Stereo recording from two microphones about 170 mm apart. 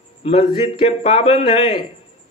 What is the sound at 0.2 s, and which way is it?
A man's voice, 35° left (ahead or behind).